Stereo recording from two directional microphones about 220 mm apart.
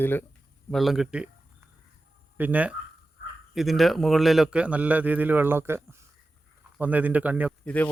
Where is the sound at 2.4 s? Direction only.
5° right (ahead or behind).